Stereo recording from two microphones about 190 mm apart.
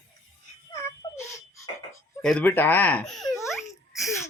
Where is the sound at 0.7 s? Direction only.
15° left (ahead or behind).